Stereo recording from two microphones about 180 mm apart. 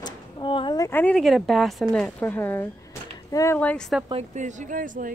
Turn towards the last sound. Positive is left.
turn(degrees=-45)  # may be behind; listen again after turning